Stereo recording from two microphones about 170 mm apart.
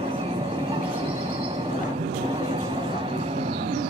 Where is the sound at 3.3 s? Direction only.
30° right (ahead or behind).